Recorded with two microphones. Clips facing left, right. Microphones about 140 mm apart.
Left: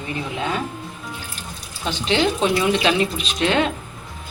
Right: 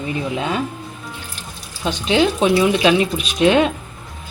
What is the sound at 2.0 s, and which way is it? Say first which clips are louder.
Speech: right 4 dB; 10° right (ahead or behind).